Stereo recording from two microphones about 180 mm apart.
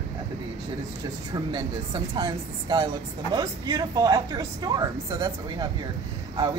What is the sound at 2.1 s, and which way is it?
Speech, 25° right (ahead or behind).